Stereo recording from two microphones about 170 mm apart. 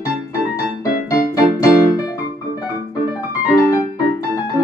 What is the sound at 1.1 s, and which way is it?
Keyboard, 20° left (ahead or behind).